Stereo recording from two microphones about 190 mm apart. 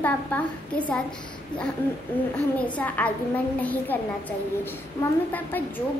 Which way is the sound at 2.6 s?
5° left (ahead or behind).